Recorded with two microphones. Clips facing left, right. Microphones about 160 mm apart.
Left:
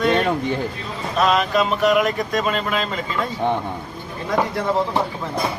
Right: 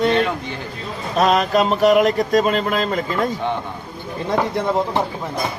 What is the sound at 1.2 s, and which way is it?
Speech, 40° right (ahead or behind).